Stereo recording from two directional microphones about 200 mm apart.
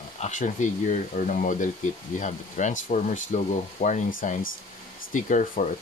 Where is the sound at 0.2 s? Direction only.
40° left (ahead or behind).